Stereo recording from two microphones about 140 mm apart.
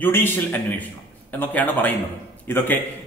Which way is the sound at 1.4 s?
10° left (ahead or behind).